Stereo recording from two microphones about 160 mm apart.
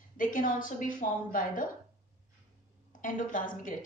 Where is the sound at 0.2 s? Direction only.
55° left (ahead or behind).